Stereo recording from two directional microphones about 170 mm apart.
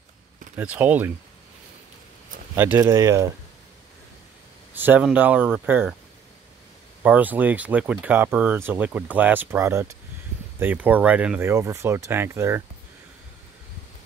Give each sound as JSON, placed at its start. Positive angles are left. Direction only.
{"t": 0.6, "sound": "speech", "side_deg": -10}
{"t": 2.5, "sound": "speech", "side_deg": -10}
{"t": 4.7, "sound": "speech", "side_deg": -10}
{"t": 7.0, "sound": "speech", "side_deg": -10}